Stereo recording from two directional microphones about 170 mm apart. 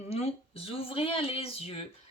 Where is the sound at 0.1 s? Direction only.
35° left (ahead or behind).